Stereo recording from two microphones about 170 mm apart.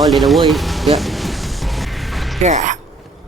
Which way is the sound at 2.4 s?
45° right (ahead or behind).